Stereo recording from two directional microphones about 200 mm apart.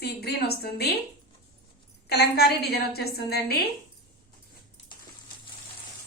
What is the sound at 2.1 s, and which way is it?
A woman's voice, 50° left (ahead or behind).